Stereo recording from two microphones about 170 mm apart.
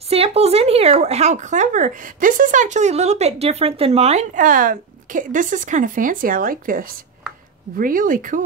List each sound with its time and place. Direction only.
0.1 s speech: 35° right (ahead or behind); by 8.4 s 50° right (ahead or behind)